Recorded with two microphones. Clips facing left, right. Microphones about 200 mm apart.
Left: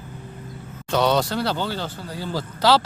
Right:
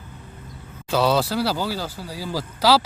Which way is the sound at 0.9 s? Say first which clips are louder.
Even; 5° right (ahead or behind).